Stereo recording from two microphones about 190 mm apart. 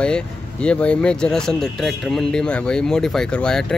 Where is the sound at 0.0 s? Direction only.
5° left (ahead or behind).